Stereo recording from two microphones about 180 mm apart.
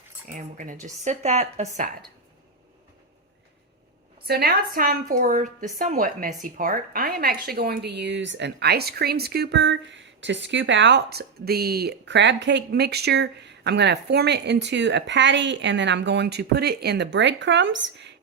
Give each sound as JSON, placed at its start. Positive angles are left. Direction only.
{"t": 0.3, "sound": "speech", "side_deg": -45}
{"t": 4.3, "sound": "a woman's voice", "side_deg": -60}